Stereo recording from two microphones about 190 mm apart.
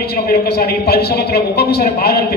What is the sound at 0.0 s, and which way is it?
A man's voice, 55° left (ahead or behind).